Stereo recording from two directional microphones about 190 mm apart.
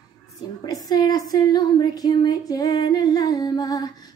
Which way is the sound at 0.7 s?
20° left (ahead or behind).